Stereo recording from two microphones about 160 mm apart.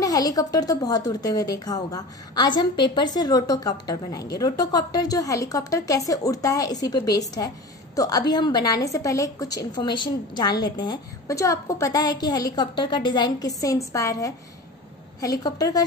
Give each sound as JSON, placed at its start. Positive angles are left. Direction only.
{"t": 0.0, "sound": "a woman's voice", "side_deg": 25}